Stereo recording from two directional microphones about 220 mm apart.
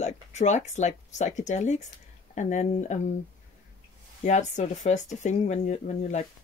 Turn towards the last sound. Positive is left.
turn(degrees=30)  # may be behind; listen again after turning